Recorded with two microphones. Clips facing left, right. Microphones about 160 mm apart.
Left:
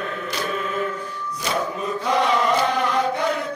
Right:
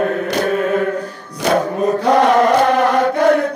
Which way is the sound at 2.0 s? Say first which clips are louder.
Right 7 dB; 60° right (ahead or behind).